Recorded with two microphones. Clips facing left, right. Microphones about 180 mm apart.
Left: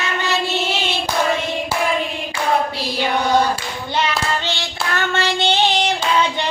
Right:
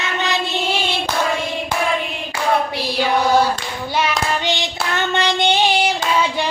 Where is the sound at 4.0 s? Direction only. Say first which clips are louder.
Right 1 dB; 15° right (ahead or behind).